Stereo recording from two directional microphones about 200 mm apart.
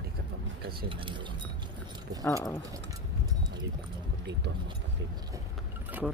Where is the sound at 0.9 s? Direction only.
25° right (ahead or behind).